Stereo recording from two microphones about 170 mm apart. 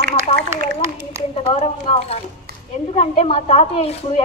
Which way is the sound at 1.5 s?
35° left (ahead or behind).